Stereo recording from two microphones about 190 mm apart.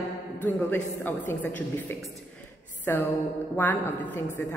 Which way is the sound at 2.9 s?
10° left (ahead or behind).